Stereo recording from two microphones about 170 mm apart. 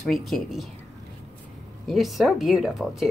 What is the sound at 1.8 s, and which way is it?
Speech, centre (ahead or behind).